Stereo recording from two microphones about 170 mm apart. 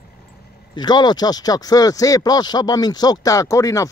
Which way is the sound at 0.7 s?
25° left (ahead or behind).